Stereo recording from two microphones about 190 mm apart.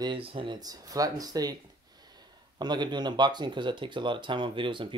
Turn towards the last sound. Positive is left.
turn(degrees=-25)  # may be behind; listen again after turning